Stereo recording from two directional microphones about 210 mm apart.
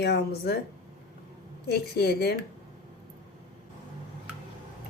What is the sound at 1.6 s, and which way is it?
Speech, 50° left (ahead or behind).